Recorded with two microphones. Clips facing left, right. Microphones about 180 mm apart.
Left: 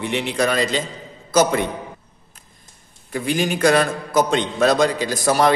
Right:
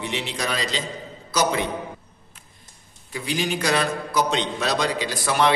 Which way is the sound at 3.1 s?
50° left (ahead or behind).